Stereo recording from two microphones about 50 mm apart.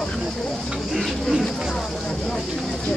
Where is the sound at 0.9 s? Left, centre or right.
Centre.